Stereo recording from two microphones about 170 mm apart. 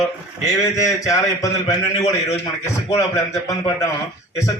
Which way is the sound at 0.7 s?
20° left (ahead or behind).